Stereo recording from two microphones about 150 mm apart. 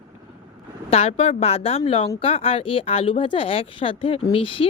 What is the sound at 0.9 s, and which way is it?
A woman's voice, 45° left (ahead or behind).